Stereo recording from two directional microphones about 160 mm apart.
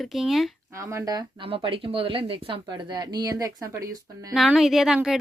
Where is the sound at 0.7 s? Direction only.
20° right (ahead or behind).